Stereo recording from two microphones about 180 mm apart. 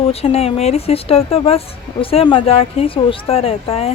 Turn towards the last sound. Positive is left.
turn(degrees=35)  # may be behind; listen again after turning